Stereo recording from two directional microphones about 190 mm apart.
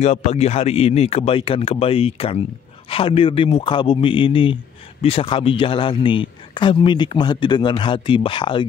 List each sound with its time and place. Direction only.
0.0 s a man's voice: 35° left (ahead or behind)